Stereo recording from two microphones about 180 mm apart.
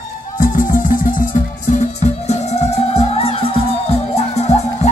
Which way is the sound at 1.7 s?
40° left (ahead or behind).